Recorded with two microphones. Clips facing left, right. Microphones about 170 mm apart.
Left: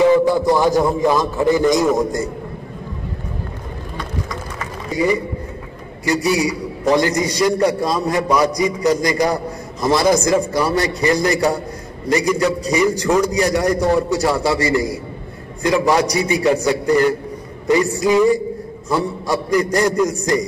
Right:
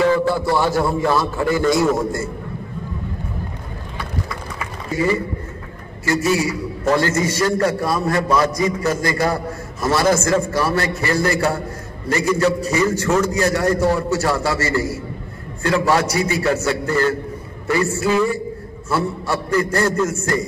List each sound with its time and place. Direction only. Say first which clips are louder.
0.0 s a man's voice: left 4 dB; 15° left (ahead or behind)
4.9 s a man's voice: left 1 dB; 15° left (ahead or behind)